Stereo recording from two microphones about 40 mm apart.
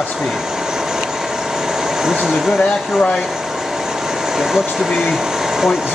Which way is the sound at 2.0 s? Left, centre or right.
Centre.